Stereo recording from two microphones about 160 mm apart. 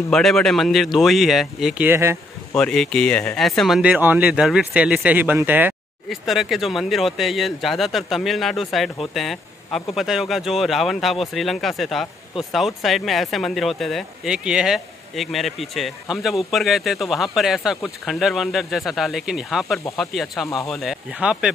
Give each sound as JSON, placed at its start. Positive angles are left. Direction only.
{"t": 0.1, "sound": "speech", "side_deg": 5}
{"t": 1.9, "sound": "speech", "side_deg": -15}
{"t": 2.5, "sound": "speech", "side_deg": 5}
{"t": 6.0, "sound": "speech", "side_deg": 0}